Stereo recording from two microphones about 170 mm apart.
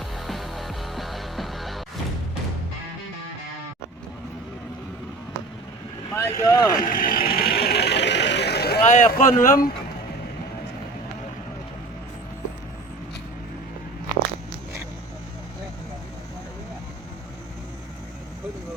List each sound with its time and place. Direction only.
0.3 s music: centre (ahead or behind)
6.1 s speech: 20° left (ahead or behind)
6.7 s vehicle: 55° left (ahead or behind)
8.8 s speech: 45° left (ahead or behind)